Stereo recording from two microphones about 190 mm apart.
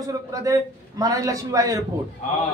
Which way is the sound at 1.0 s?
20° right (ahead or behind).